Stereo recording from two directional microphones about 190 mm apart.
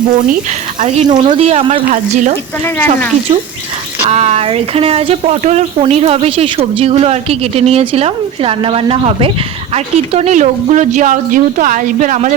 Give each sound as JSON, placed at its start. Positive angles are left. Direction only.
{"t": 1.0, "sound": "speech", "side_deg": -25}
{"t": 2.6, "sound": "speech", "side_deg": 10}
{"t": 4.0, "sound": "speech", "side_deg": -35}